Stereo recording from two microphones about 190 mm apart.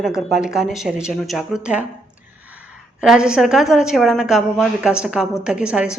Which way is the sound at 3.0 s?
5° right (ahead or behind).